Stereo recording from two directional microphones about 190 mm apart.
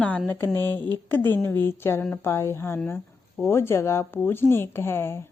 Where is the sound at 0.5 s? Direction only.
20° right (ahead or behind).